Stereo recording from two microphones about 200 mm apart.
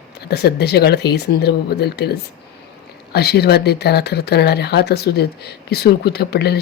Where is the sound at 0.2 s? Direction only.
55° left (ahead or behind).